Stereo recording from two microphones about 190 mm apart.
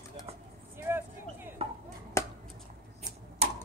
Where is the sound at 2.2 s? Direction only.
15° left (ahead or behind).